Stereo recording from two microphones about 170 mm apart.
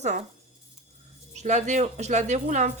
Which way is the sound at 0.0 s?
45° right (ahead or behind).